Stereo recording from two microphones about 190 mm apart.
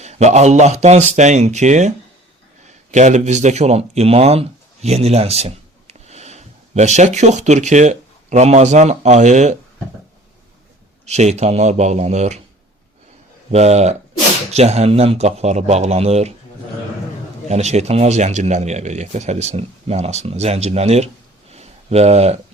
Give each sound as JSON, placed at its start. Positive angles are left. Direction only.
{"t": 0.0, "sound": "speech", "side_deg": -35}
{"t": 2.9, "sound": "speech", "side_deg": -40}
{"t": 11.0, "sound": "speech", "side_deg": -35}
{"t": 13.5, "sound": "speech", "side_deg": -35}
{"t": 17.5, "sound": "speech", "side_deg": -35}
{"t": 21.5, "sound": "a sound", "side_deg": -35}